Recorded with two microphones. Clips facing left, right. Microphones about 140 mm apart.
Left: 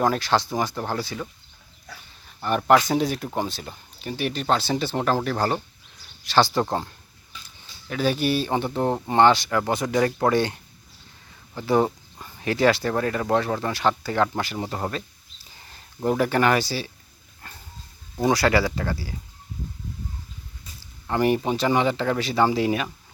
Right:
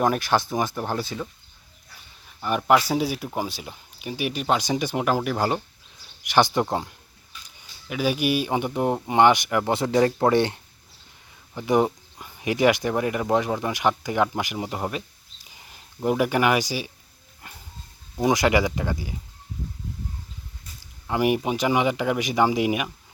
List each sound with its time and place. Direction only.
0.0 s speech: 20° right (ahead or behind)
2.4 s speech: 5° right (ahead or behind)
17.4 s dog: 15° right (ahead or behind)
18.2 s speech: 15° right (ahead or behind)
21.1 s speech: 10° right (ahead or behind)